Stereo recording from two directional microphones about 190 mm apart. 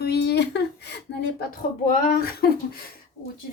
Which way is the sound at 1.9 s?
45° left (ahead or behind).